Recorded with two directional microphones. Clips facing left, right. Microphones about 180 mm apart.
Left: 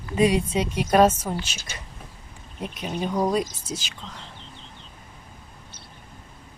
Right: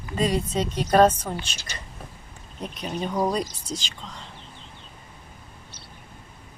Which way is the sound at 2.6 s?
5° left (ahead or behind).